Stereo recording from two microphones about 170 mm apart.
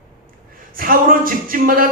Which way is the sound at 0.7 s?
55° right (ahead or behind).